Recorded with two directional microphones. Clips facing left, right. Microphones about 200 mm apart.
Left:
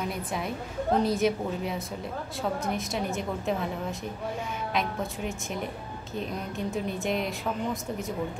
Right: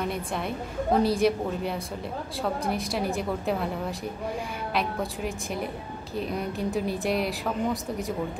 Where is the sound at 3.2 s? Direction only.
5° right (ahead or behind).